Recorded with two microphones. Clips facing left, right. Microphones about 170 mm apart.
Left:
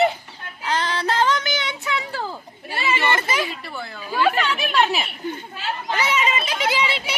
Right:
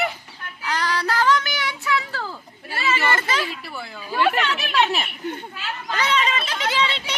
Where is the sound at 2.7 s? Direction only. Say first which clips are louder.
Left 1 dB; 15° left (ahead or behind).